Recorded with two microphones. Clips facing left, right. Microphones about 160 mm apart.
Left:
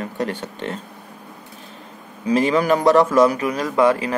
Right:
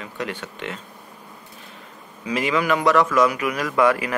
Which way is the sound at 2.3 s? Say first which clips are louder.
Left 5 dB; 35° left (ahead or behind).